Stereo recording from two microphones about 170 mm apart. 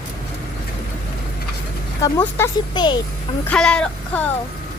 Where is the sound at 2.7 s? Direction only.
25° left (ahead or behind).